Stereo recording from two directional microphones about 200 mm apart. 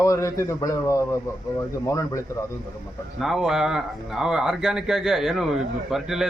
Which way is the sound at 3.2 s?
Centre (ahead or behind).